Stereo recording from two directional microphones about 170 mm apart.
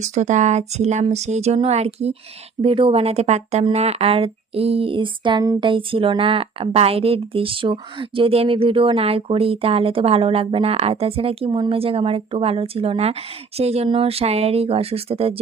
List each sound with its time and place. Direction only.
0.0 s speech: 45° right (ahead or behind)